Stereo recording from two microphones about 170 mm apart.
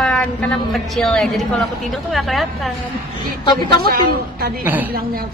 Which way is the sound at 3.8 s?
60° right (ahead or behind).